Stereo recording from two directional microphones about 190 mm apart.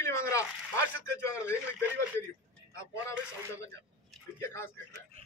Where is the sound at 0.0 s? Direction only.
15° left (ahead or behind).